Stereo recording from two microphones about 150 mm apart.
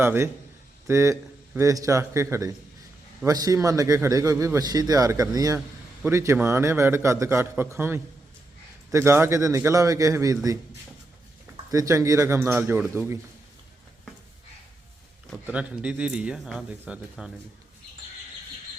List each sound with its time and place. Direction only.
0.0 s a man's voice: 15° right (ahead or behind)
11.7 s a man's voice: 20° right (ahead or behind)
15.4 s a man's voice: 10° right (ahead or behind)